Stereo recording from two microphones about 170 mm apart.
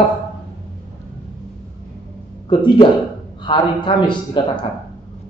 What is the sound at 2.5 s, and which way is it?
A man's voice, 25° left (ahead or behind).